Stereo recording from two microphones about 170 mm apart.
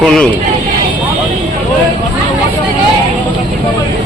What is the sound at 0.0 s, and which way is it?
Speech, 5° left (ahead or behind).